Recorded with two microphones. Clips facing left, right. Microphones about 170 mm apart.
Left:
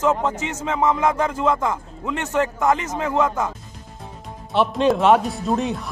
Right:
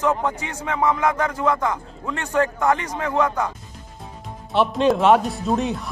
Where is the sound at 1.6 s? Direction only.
10° left (ahead or behind).